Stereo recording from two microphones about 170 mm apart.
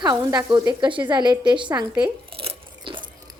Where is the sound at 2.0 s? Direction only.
35° right (ahead or behind).